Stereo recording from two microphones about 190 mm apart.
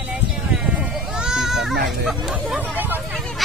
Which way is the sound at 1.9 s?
Centre (ahead or behind).